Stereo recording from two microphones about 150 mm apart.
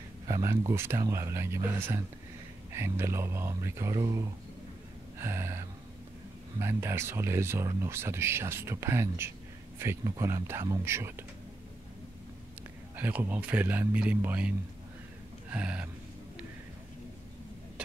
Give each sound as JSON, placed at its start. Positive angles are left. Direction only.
{"t": 0.3, "sound": "speech", "side_deg": -20}
{"t": 12.9, "sound": "speech", "side_deg": -15}
{"t": 15.5, "sound": "speech", "side_deg": -10}